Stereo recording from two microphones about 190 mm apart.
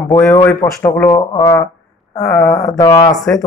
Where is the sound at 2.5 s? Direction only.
20° left (ahead or behind).